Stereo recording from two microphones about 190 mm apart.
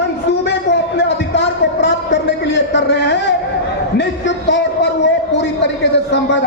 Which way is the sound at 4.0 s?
70° left (ahead or behind).